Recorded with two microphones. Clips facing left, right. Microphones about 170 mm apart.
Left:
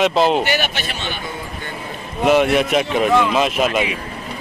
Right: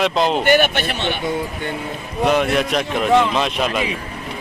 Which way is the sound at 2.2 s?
5° left (ahead or behind).